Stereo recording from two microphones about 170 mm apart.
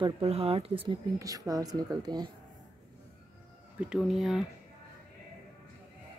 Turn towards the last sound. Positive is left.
turn(degrees=-5)  # may be behind; listen again after turning